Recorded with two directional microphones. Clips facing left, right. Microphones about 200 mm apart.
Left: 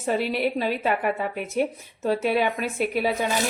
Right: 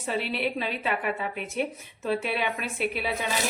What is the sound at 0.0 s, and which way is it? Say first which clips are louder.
A woman's voice: left 5 dB; 45° left (ahead or behind).